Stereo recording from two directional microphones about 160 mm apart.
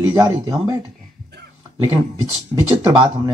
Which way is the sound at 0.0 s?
20° right (ahead or behind).